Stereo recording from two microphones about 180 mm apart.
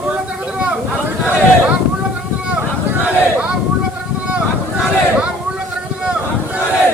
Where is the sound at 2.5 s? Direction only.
5° right (ahead or behind).